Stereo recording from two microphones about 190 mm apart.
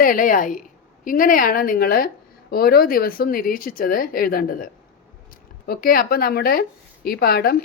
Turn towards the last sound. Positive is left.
turn(degrees=55)  # may be behind; listen again after turning